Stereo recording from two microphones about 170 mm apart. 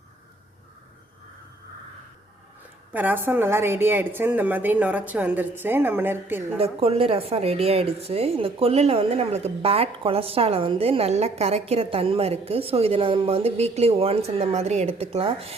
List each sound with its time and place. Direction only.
2.9 s a woman's voice: 10° right (ahead or behind)
6.6 s a woman's voice: 35° right (ahead or behind)